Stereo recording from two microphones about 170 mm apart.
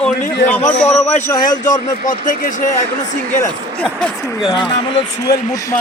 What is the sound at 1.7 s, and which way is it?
Speech, 50° left (ahead or behind).